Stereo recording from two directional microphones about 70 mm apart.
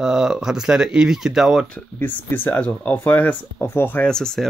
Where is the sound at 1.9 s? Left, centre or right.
Left.